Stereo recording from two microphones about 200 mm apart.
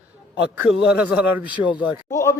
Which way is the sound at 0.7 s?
5° right (ahead or behind).